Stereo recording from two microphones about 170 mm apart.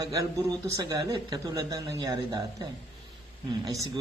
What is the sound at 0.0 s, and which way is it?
Speech, 20° right (ahead or behind).